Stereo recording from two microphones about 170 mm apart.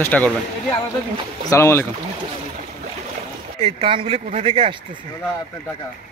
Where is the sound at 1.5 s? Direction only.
15° left (ahead or behind).